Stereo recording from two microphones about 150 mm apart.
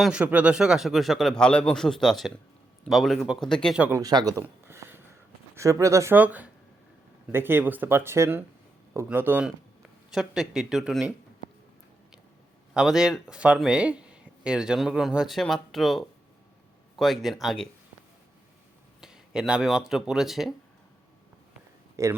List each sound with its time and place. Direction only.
0.0 s speech: 5° right (ahead or behind)
3.8 s speech: 10° right (ahead or behind)
4.0 s speech: 25° right (ahead or behind)
4.4 s a sound: 15° right (ahead or behind)
5.5 s speech: 20° right (ahead or behind)
10.1 s speech: centre (ahead or behind)
12.7 s speech: 5° right (ahead or behind)
19.0 s speech: 5° right (ahead or behind)
22.0 s speech: 20° right (ahead or behind)